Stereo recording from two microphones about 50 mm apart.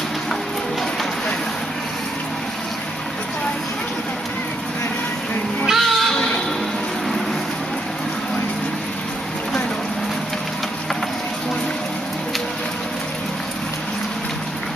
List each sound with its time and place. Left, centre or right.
5.7 s cat: centre